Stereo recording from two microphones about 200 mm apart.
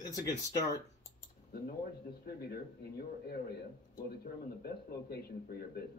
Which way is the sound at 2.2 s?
50° left (ahead or behind).